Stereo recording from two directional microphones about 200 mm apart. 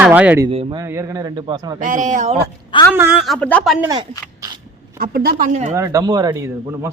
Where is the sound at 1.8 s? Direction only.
40° right (ahead or behind).